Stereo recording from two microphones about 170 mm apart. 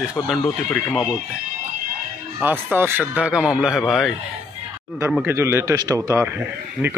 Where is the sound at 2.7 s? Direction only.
10° right (ahead or behind).